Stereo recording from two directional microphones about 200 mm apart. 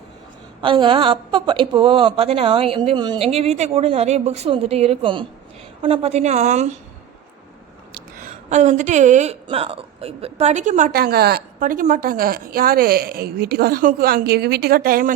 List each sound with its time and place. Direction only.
0.6 s speech: 25° right (ahead or behind)
7.9 s a woman's voice: 40° right (ahead or behind)